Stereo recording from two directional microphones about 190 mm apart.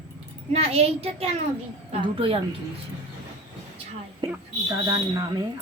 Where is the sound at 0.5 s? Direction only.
30° right (ahead or behind).